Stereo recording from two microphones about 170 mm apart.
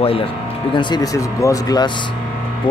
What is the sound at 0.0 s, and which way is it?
Speech, 35° left (ahead or behind).